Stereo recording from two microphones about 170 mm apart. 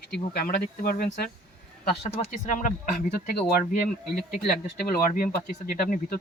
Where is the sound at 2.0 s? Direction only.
40° left (ahead or behind).